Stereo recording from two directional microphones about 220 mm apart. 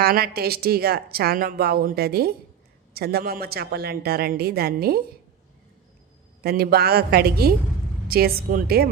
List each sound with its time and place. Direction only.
0.0 s a woman's voice: 45° right (ahead or behind)
6.4 s a woman's voice: 45° right (ahead or behind)